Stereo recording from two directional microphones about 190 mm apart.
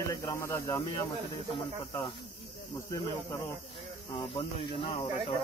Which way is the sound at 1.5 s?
25° left (ahead or behind).